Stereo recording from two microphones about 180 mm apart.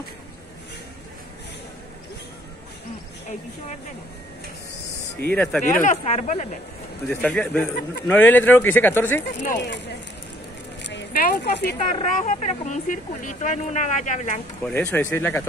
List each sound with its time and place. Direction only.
5.2 s speech: 5° left (ahead or behind)
5.6 s speech: 45° left (ahead or behind)
7.1 s a man's voice: 5° left (ahead or behind)
9.6 s speech: 75° left (ahead or behind)
10.8 s a sound: 75° left (ahead or behind)
11.2 s speech: 65° left (ahead or behind)
11.8 s speech: 40° left (ahead or behind)
14.7 s speech: 10° left (ahead or behind)